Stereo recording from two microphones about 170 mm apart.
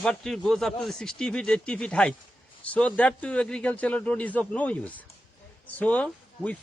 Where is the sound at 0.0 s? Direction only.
5° left (ahead or behind).